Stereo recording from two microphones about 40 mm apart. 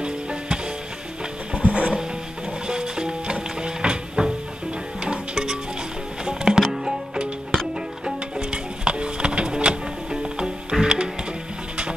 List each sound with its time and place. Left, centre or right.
0.0 s music: right